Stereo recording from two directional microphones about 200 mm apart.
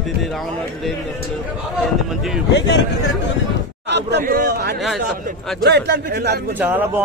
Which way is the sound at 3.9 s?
55° right (ahead or behind).